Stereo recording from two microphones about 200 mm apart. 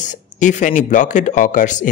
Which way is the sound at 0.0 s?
40° left (ahead or behind).